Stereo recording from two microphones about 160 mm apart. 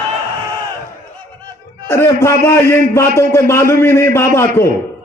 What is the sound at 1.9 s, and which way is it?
A man's voice, 15° left (ahead or behind).